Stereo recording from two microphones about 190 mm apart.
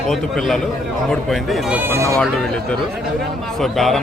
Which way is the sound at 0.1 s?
Centre (ahead or behind).